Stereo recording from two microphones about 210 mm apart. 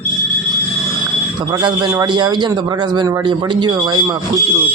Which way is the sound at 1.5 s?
20° right (ahead or behind).